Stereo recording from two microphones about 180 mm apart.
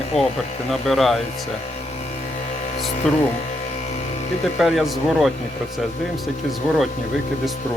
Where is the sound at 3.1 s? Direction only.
Centre (ahead or behind).